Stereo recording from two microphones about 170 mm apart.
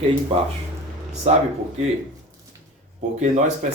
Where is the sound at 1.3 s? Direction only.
40° right (ahead or behind).